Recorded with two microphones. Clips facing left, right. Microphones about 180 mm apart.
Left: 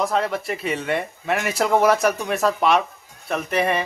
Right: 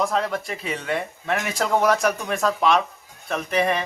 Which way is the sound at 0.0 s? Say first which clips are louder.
Left 1 dB; centre (ahead or behind).